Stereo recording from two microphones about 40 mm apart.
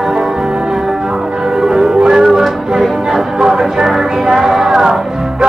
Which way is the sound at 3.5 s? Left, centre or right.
Centre.